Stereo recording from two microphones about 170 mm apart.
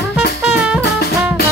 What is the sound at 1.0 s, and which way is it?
Drum, 65° left (ahead or behind).